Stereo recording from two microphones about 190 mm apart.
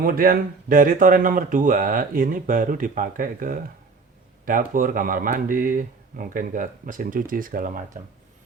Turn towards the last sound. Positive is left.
turn(degrees=-45)  # may be behind; listen again after turning